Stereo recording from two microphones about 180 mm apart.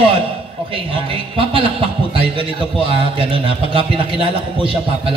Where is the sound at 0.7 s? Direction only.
30° right (ahead or behind).